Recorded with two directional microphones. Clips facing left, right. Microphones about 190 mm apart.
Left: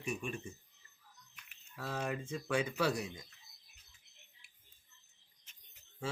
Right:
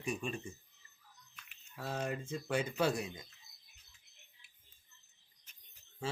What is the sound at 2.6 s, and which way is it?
Speech, 25° right (ahead or behind).